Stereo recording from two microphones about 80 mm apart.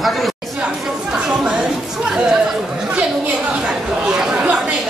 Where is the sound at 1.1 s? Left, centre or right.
Centre.